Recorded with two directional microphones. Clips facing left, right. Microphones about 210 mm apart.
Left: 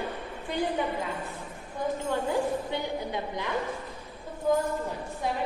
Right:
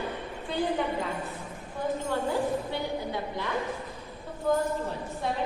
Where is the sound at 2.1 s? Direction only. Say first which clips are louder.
Left 1 dB; 15° left (ahead or behind).